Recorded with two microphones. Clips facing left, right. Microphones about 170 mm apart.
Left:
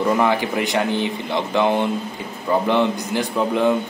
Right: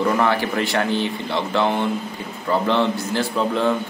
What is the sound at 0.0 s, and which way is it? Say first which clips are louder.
A man's voice: left 1 dB; 15° left (ahead or behind).